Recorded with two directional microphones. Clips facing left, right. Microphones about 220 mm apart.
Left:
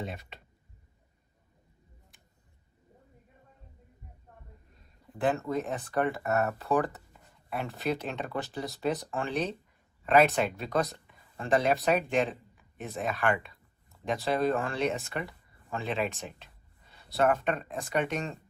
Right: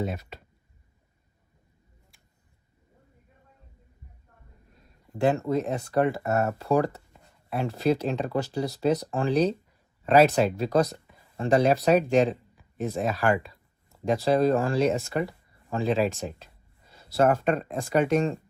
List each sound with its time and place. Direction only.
0.0 s speech: 45° right (ahead or behind)
5.2 s speech: 30° right (ahead or behind)
10.9 s a sound: 35° right (ahead or behind)
12.1 s speech: 35° right (ahead or behind)
13.9 s a sound: 40° right (ahead or behind)
14.3 s speech: 40° right (ahead or behind)